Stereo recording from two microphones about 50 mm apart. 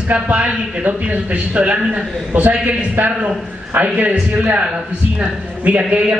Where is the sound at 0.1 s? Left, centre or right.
Right.